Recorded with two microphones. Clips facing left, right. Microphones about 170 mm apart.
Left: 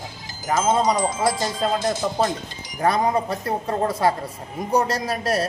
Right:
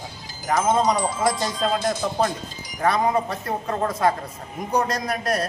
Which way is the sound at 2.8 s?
35° left (ahead or behind).